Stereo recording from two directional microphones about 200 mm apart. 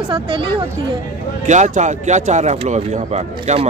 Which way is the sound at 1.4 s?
35° right (ahead or behind).